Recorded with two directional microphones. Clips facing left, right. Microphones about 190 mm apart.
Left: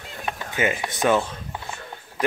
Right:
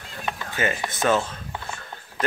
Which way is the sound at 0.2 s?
15° left (ahead or behind).